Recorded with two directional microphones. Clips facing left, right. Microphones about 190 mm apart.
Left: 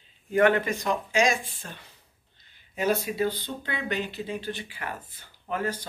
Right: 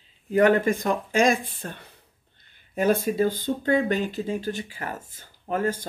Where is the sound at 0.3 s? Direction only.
40° right (ahead or behind).